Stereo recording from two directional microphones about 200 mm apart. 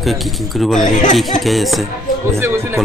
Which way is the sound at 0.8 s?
40° left (ahead or behind).